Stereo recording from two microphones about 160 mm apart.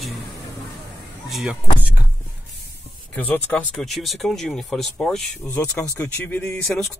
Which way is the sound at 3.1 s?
10° left (ahead or behind).